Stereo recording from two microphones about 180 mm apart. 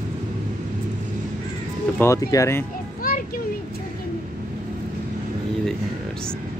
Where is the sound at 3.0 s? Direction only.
50° left (ahead or behind).